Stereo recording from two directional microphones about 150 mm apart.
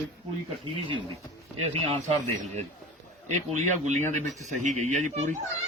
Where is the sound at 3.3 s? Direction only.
50° right (ahead or behind).